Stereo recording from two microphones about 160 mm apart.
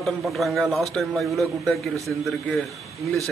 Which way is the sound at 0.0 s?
Centre (ahead or behind).